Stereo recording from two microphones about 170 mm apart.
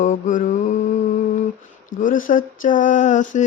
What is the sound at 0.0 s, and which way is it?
Mantra, 50° left (ahead or behind).